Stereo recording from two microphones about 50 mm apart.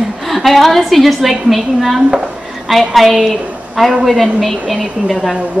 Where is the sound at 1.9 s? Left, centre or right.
Right.